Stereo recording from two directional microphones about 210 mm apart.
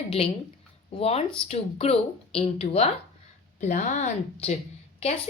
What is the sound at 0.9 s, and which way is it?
A woman's voice, 30° left (ahead or behind).